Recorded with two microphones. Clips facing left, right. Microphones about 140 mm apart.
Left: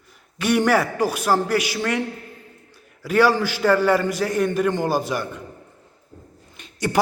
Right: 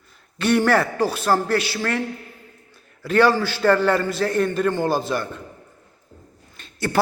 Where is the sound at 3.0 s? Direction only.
10° left (ahead or behind).